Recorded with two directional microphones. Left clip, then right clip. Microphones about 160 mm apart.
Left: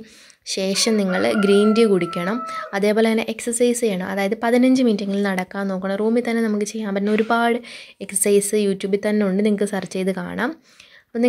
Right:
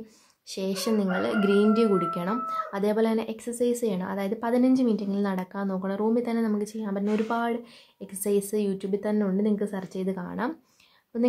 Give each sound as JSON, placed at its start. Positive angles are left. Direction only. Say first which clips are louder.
{"t": 0.5, "sound": "speech", "louder": "left 8 dB", "side_deg": 20}